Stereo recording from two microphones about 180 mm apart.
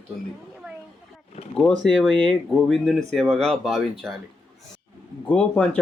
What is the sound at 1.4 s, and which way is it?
Speech, 30° left (ahead or behind).